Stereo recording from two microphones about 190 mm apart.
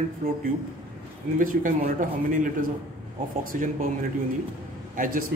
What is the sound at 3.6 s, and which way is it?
A man's voice, 50° right (ahead or behind).